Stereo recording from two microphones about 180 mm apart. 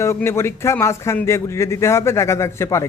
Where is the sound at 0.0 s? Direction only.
15° left (ahead or behind).